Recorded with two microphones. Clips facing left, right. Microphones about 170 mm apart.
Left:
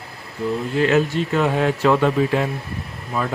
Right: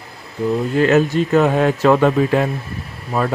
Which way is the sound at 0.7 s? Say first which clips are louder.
Right 3 dB; 45° right (ahead or behind).